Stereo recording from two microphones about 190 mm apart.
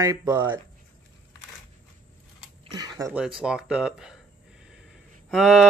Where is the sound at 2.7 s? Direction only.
20° right (ahead or behind).